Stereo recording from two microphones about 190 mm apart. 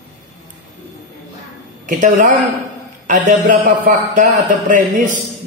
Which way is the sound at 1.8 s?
40° right (ahead or behind).